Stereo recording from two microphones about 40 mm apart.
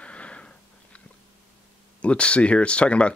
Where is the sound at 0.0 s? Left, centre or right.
Left.